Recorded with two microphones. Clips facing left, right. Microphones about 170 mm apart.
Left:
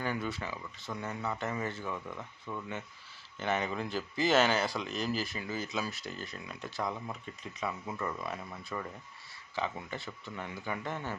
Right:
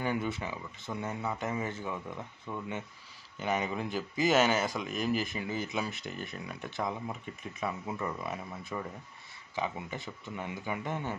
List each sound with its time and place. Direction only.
0.0 s speech: 20° right (ahead or behind)
4.8 s speech: 50° right (ahead or behind)
5.3 s speech: 20° right (ahead or behind)